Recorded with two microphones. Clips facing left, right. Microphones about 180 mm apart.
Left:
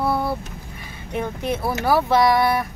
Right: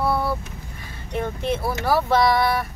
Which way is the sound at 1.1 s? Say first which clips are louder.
Even; 10° left (ahead or behind).